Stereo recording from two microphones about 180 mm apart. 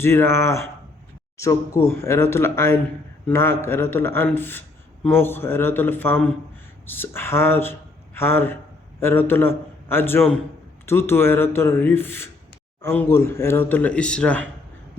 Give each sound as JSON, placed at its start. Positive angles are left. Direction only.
{"t": 0.0, "sound": "a man's voice", "side_deg": 15}